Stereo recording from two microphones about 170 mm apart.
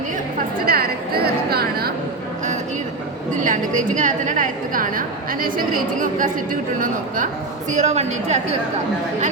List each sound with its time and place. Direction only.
0.6 s a woman's voice: 60° right (ahead or behind)
3.4 s a woman's voice: 50° right (ahead or behind)